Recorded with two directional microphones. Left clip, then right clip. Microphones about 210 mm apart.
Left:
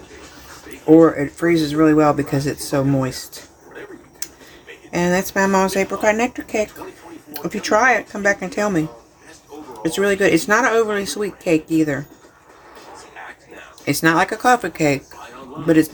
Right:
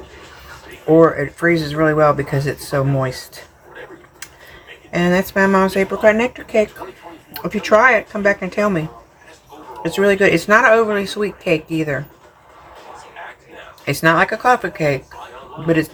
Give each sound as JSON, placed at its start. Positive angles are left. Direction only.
{"t": 0.9, "sound": "speech", "side_deg": 25}
{"t": 4.9, "sound": "speech", "side_deg": 25}
{"t": 9.8, "sound": "speech", "side_deg": 25}
{"t": 13.8, "sound": "speech", "side_deg": 25}